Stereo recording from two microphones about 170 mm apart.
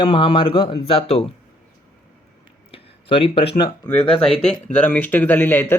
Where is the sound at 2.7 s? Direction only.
35° left (ahead or behind).